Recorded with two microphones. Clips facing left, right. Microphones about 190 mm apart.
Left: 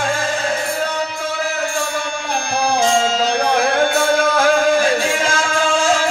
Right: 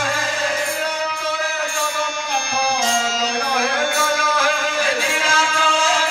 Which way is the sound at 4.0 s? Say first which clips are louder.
Left 5 dB; 55° left (ahead or behind).